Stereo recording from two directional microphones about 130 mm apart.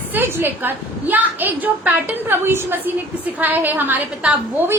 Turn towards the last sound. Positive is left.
turn(degrees=-15)  # may be behind; listen again after turning